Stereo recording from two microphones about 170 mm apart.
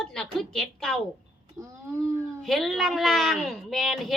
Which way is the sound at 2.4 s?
Centre (ahead or behind).